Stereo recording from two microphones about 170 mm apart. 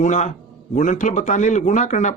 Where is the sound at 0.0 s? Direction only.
45° left (ahead or behind).